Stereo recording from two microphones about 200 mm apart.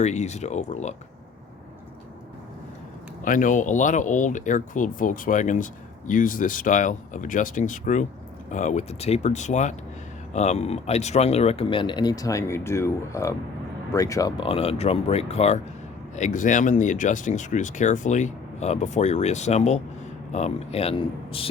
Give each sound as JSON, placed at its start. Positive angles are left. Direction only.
{"t": 0.0, "sound": "speech", "side_deg": 35}
{"t": 3.2, "sound": "speech", "side_deg": 40}